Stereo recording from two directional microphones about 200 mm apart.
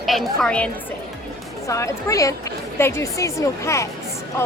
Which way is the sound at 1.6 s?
15° left (ahead or behind).